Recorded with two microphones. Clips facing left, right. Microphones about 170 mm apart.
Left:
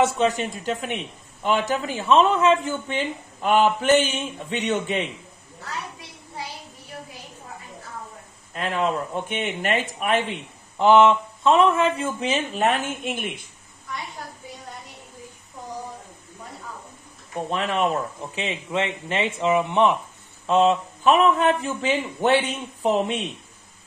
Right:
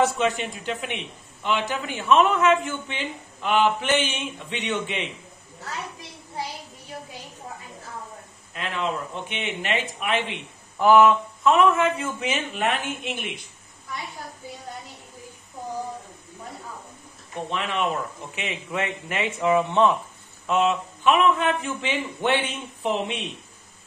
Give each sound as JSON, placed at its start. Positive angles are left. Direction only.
{"t": 0.2, "sound": "speech", "side_deg": 40}
{"t": 8.5, "sound": "speech", "side_deg": 45}
{"t": 10.8, "sound": "speech", "side_deg": 25}
{"t": 17.5, "sound": "speech", "side_deg": 40}
{"t": 20.4, "sound": "speech", "side_deg": 35}